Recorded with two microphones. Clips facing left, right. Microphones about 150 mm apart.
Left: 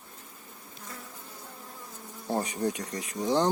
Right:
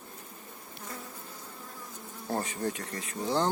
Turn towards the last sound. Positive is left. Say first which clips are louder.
# left 3 dB
turn(degrees=15)  # may be behind; listen again after turning